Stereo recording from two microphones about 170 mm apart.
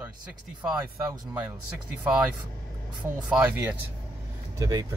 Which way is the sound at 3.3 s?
10° right (ahead or behind).